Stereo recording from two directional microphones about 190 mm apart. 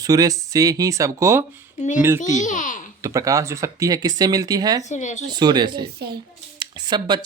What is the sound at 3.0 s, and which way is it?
Speech, 15° right (ahead or behind).